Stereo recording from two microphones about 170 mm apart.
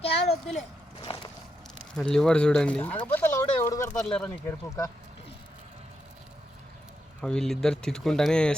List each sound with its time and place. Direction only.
0.0 s speech: 35° left (ahead or behind)
1.0 s boat: 30° left (ahead or behind)
2.0 s speech: 5° left (ahead or behind)
4.1 s speech: 5° left (ahead or behind)
7.2 s speech: 5° left (ahead or behind)